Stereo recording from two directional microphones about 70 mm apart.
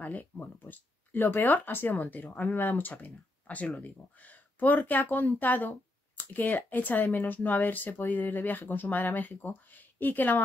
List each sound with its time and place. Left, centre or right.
0.0 s speech: left
8.2 s speech: left
8.5 s speech: left